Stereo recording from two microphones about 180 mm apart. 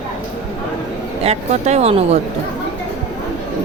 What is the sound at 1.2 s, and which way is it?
Speech, 40° right (ahead or behind).